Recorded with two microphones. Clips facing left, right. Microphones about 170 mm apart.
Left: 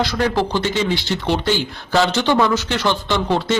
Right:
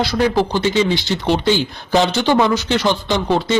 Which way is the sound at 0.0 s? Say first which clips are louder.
Right 2 dB; 10° right (ahead or behind).